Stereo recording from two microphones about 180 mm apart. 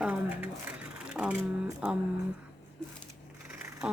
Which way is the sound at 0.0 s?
10° right (ahead or behind).